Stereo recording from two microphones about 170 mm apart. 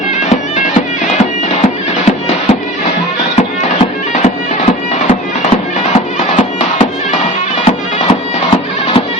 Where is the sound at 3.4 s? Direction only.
40° left (ahead or behind).